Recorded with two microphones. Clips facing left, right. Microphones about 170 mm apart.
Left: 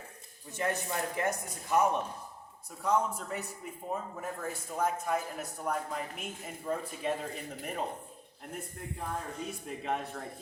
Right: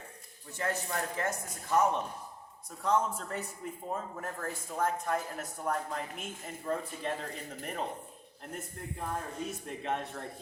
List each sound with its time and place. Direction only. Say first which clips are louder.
0.5 s speech: left 1 dB; 20° left (ahead or behind)
9.5 s speech: left 2 dB; centre (ahead or behind)